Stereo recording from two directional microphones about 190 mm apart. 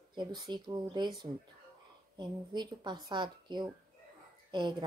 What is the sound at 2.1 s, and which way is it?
Speech, 25° right (ahead or behind).